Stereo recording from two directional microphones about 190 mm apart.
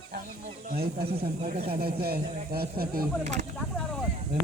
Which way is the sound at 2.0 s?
55° right (ahead or behind).